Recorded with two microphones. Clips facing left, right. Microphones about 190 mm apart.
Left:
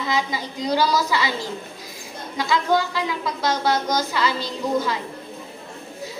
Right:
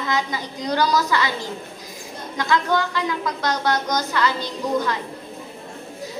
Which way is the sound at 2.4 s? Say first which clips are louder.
Even; 10° left (ahead or behind).